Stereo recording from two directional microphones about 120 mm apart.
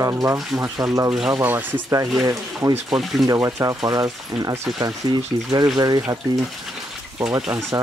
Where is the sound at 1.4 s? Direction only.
15° right (ahead or behind).